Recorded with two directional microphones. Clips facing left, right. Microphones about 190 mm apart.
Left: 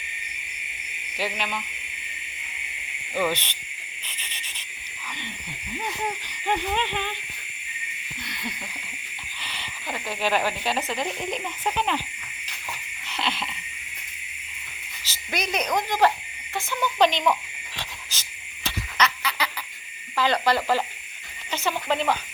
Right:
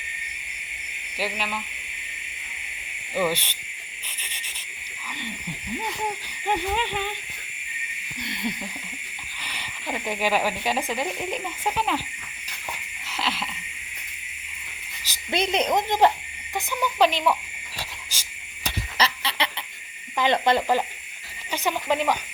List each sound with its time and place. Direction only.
1.1 s speech: 5° right (ahead or behind)
3.2 s speech: 10° right (ahead or behind)
6.5 s speech: 10° right (ahead or behind)
8.2 s speech: 25° right (ahead or behind)
9.4 s speech: 10° right (ahead or behind)
13.1 s wheeze: 5° right (ahead or behind)
15.0 s cricket: 15° right (ahead or behind)
15.4 s speech: 25° right (ahead or behind)
16.6 s speech: 10° right (ahead or behind)
17.7 s cricket: 10° right (ahead or behind)
18.9 s frog: 30° right (ahead or behind)
20.1 s speech: 20° right (ahead or behind)